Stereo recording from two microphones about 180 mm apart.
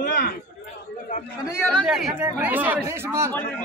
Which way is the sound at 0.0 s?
50° left (ahead or behind).